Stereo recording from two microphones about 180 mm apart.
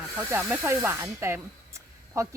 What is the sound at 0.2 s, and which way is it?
Speech, 10° right (ahead or behind).